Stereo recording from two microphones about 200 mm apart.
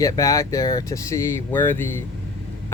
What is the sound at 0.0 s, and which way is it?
Speech, 15° left (ahead or behind).